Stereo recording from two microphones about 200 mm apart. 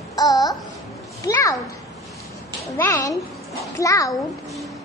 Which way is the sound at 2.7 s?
15° left (ahead or behind).